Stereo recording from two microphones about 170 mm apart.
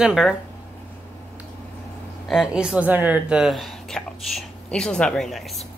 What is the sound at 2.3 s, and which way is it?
Speech, centre (ahead or behind).